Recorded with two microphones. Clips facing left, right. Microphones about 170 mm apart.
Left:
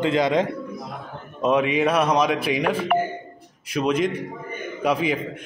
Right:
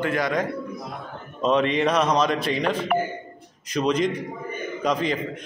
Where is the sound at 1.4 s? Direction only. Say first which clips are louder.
Left 1 dB; 10° left (ahead or behind).